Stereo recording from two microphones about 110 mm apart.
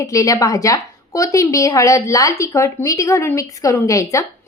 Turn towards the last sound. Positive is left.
turn(degrees=30)  # may be behind; listen again after turning